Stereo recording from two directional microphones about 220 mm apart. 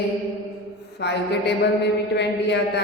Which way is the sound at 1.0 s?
50° left (ahead or behind).